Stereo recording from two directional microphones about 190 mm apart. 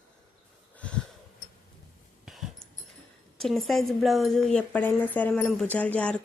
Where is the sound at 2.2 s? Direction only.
Centre (ahead or behind).